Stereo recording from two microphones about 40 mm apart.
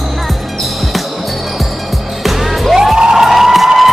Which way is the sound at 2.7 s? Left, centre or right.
Centre.